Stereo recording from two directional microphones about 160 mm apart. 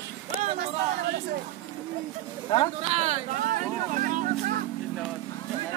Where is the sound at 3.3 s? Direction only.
60° right (ahead or behind).